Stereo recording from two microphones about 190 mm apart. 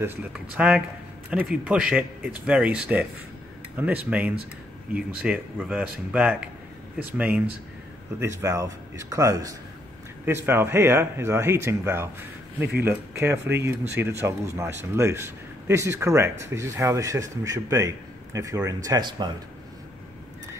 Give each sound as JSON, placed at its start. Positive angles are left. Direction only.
{"t": 0.0, "sound": "speech", "side_deg": -10}